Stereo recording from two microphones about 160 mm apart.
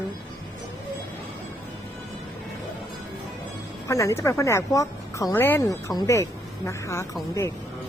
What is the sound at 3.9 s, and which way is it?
A woman's voice, 20° left (ahead or behind).